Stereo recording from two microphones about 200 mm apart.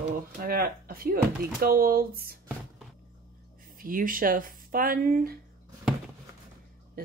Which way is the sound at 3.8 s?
45° right (ahead or behind).